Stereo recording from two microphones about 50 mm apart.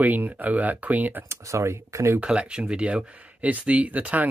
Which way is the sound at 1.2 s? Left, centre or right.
Right.